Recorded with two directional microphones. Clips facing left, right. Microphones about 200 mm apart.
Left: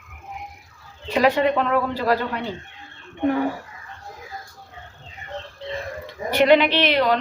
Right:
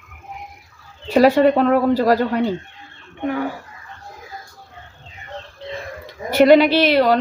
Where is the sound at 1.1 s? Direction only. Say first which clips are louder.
Right 6 dB; 40° right (ahead or behind).